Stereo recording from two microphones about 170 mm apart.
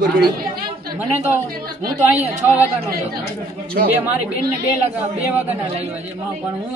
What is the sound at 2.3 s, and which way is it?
Speech, 10° right (ahead or behind).